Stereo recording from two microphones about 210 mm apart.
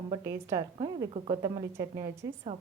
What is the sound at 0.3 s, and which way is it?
Speech, 15° right (ahead or behind).